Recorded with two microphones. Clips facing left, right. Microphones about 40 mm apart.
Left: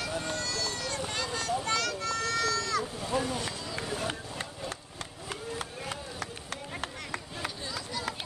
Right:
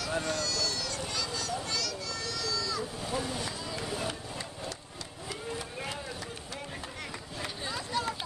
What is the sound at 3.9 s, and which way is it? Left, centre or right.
Run, left.